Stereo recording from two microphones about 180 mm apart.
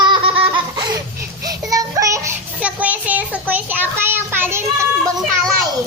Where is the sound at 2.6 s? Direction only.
5° right (ahead or behind).